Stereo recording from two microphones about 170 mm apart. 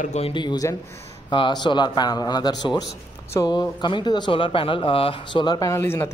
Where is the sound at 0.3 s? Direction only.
25° left (ahead or behind).